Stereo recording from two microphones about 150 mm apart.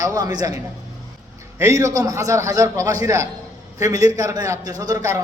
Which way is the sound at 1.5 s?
20° right (ahead or behind).